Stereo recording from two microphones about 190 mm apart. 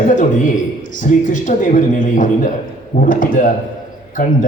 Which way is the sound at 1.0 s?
45° left (ahead or behind).